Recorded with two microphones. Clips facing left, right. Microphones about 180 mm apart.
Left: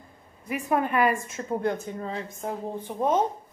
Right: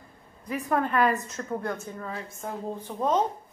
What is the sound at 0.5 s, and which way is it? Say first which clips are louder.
A woman's voice: left 1 dB; 10° left (ahead or behind).